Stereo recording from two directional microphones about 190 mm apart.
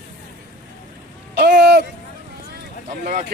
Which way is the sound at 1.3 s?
60° right (ahead or behind).